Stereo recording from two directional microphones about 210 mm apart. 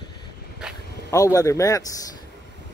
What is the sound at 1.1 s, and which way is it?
Speech, 15° left (ahead or behind).